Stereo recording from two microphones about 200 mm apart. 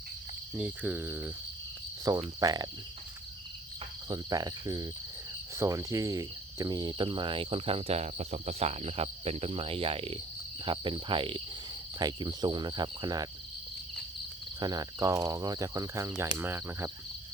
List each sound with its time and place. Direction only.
0.5 s speech: 5° right (ahead or behind)
4.1 s speech: 20° right (ahead or behind)
14.6 s speech: 20° right (ahead or behind)